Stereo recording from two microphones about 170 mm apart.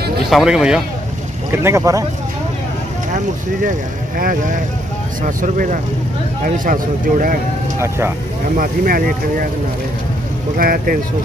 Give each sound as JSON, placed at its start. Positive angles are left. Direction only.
{"t": 0.3, "sound": "speech", "side_deg": -5}
{"t": 1.5, "sound": "speech", "side_deg": -15}
{"t": 4.2, "sound": "speech", "side_deg": -50}
{"t": 8.5, "sound": "speech", "side_deg": -60}
{"t": 10.6, "sound": "speech", "side_deg": -60}